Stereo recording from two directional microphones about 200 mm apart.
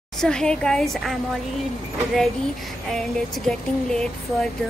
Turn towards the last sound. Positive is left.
turn(degrees=0)  # may be behind; listen again after turning